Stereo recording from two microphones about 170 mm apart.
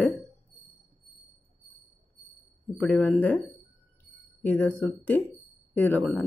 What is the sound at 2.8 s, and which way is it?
Speech, 10° left (ahead or behind).